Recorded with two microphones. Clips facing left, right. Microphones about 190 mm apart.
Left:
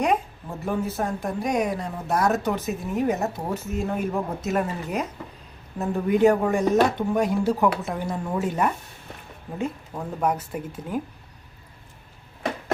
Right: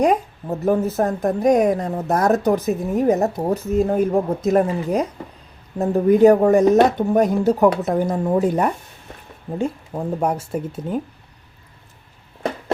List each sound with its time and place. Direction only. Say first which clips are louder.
0.0 s a woman's voice: right 6 dB; 40° right (ahead or behind)